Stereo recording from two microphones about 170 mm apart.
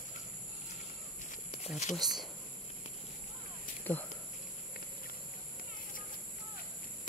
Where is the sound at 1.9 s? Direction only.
Centre (ahead or behind).